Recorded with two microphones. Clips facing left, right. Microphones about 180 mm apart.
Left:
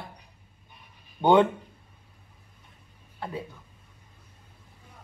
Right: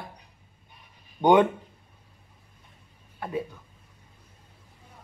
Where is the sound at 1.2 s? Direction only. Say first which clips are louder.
Right 1 dB; 15° right (ahead or behind).